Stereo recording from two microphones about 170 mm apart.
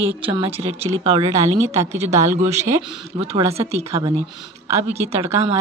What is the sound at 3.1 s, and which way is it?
Speech, 35° right (ahead or behind).